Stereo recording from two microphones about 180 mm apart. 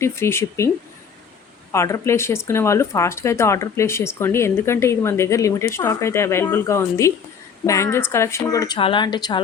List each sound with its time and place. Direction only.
0.0 s speech: 15° left (ahead or behind)
1.7 s speech: 15° left (ahead or behind)